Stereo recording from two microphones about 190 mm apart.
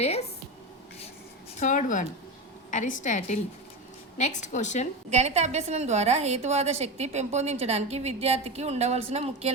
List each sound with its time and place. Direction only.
0.0 s a woman's voice: 35° left (ahead or behind)
1.5 s a woman's voice: 40° left (ahead or behind)
5.1 s a woman's voice: 35° right (ahead or behind)